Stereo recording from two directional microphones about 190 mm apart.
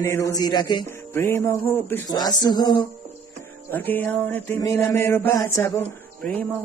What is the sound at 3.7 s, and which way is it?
A man's voice, 10° left (ahead or behind).